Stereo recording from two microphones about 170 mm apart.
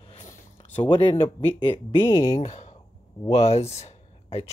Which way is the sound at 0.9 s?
30° left (ahead or behind).